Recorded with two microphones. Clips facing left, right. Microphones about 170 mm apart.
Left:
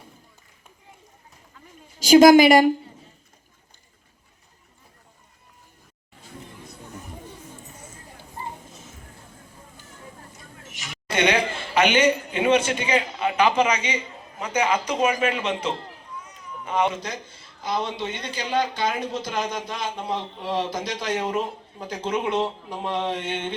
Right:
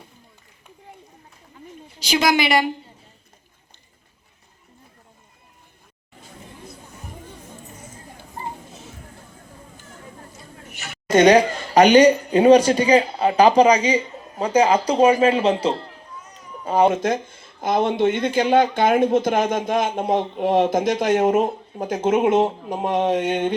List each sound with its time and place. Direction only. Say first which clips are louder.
2.0 s a woman's voice: left 9 dB; 45° left (ahead or behind)
10.7 s a woman's voice: right 12 dB; 40° right (ahead or behind)
16.9 s speech: right 11 dB; 50° right (ahead or behind)